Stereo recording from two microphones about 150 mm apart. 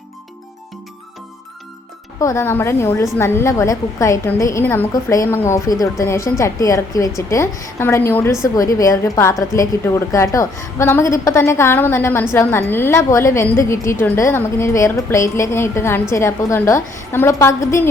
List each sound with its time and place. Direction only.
2.2 s a woman's voice: 20° left (ahead or behind)